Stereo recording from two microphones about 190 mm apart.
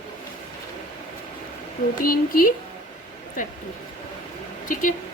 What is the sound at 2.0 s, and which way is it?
Speech, 50° left (ahead or behind).